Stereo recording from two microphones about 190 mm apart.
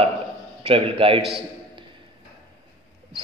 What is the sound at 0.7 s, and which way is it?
Speech, 30° right (ahead or behind).